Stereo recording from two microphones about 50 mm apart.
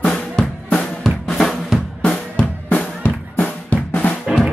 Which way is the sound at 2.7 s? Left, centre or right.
Left.